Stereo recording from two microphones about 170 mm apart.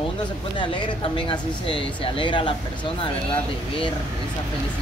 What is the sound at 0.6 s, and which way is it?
Speech, 30° left (ahead or behind).